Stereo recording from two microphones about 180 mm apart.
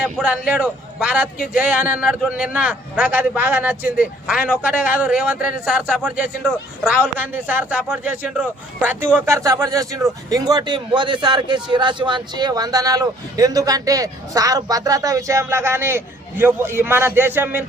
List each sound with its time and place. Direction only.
0.0 s a man's voice: 5° right (ahead or behind)